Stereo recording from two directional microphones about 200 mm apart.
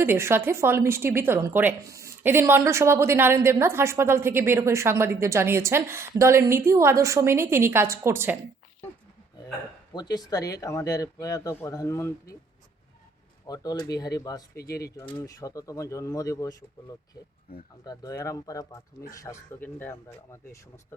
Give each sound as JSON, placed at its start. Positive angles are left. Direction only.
{"t": 0.0, "sound": "a woman's voice", "side_deg": -10}
{"t": 9.9, "sound": "speech", "side_deg": 20}
{"t": 13.5, "sound": "speech", "side_deg": 20}
{"t": 14.5, "sound": "speech", "side_deg": 50}
{"t": 15.0, "sound": "speech", "side_deg": 20}
{"t": 17.5, "sound": "speech", "side_deg": 50}
{"t": 17.8, "sound": "speech", "side_deg": 15}